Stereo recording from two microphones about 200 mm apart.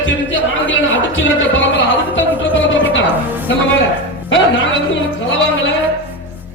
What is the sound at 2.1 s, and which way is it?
Speech, 70° left (ahead or behind).